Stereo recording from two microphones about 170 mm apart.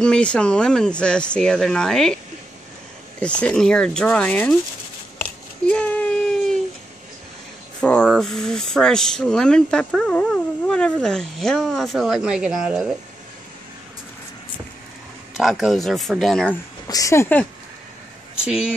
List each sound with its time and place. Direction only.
0.0 s speech: 5° left (ahead or behind)
3.2 s speech: 5° left (ahead or behind)
5.2 s a sound: 5° left (ahead or behind)
7.8 s speech: 5° left (ahead or behind)
15.3 s speech: centre (ahead or behind)
16.8 s speech: 20° left (ahead or behind)
18.4 s speech: 5° right (ahead or behind)